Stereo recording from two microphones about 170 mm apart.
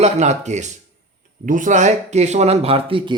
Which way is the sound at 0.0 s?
45° right (ahead or behind).